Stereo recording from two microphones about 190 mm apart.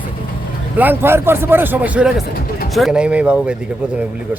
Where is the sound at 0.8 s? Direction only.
10° right (ahead or behind).